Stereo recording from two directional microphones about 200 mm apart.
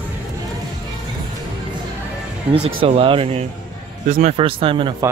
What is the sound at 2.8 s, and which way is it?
Speech, 25° right (ahead or behind).